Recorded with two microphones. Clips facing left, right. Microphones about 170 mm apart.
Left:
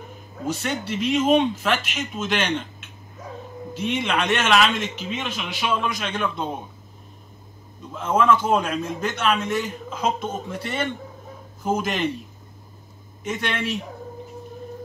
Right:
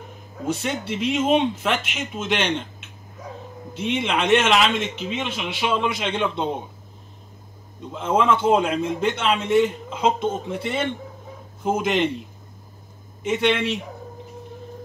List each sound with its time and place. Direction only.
0.6 s a man's voice: 20° right (ahead or behind)
3.9 s a man's voice: 25° right (ahead or behind)
7.9 s a man's voice: 25° right (ahead or behind)
13.3 s a man's voice: 25° right (ahead or behind)